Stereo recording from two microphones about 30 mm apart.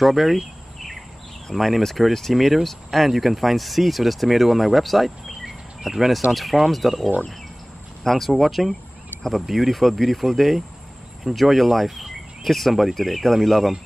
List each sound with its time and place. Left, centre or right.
0.0 s speech: centre
1.5 s speech: centre